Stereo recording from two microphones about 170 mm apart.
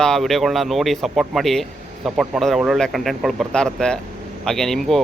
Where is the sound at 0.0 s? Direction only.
Centre (ahead or behind).